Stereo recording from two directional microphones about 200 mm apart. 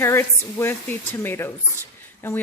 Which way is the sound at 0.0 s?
10° left (ahead or behind).